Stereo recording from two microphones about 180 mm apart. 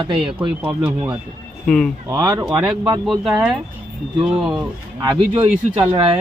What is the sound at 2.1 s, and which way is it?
Speech, 20° right (ahead or behind).